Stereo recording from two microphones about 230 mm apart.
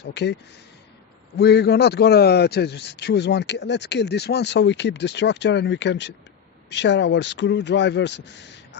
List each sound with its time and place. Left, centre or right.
0.0 s a man's voice: left
1.4 s a man's voice: left